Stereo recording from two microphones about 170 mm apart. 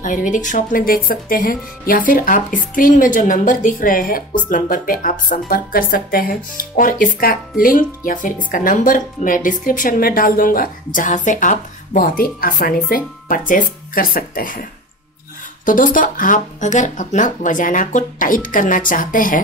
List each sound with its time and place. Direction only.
0.0 s a woman's voice: 50° left (ahead or behind)